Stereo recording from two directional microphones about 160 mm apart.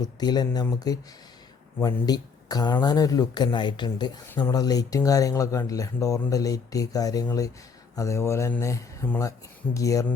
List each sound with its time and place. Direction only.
0.0 s speech: 25° left (ahead or behind)